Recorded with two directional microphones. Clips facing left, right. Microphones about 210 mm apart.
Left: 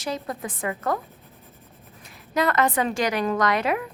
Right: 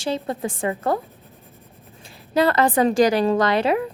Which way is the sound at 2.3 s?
30° right (ahead or behind).